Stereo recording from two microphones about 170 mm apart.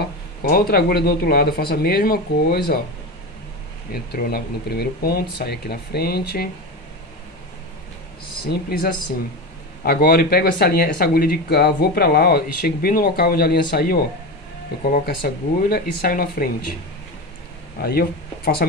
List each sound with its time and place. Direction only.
0.4 s speech: 60° left (ahead or behind)
3.9 s speech: 65° left (ahead or behind)
8.5 s speech: 65° left (ahead or behind)
17.8 s speech: 65° left (ahead or behind)